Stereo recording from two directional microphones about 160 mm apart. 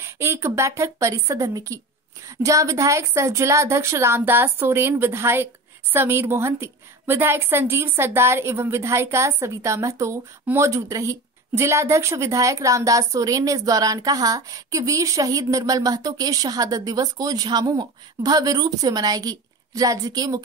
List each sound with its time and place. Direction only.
0.0 s a woman's voice: 15° right (ahead or behind)